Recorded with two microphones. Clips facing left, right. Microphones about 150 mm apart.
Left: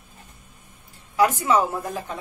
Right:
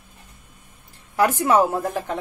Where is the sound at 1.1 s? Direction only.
55° right (ahead or behind).